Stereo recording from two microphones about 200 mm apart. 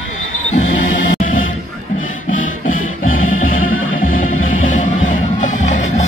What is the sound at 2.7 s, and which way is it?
Music, 90° left.